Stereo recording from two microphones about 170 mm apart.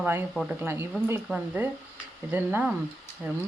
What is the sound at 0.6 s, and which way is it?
Speech, 15° right (ahead or behind).